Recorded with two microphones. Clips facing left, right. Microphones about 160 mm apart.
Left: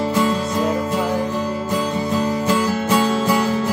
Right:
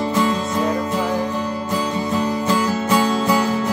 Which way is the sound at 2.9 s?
5° left (ahead or behind).